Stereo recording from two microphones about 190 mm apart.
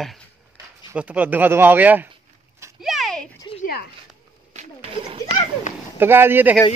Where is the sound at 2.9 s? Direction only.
Centre (ahead or behind).